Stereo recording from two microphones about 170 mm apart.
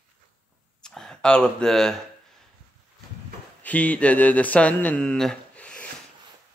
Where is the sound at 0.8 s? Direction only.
5° left (ahead or behind).